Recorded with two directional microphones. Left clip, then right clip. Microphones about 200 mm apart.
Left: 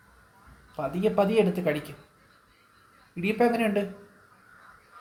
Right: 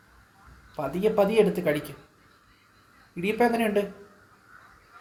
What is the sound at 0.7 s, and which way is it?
Speech, 15° right (ahead or behind).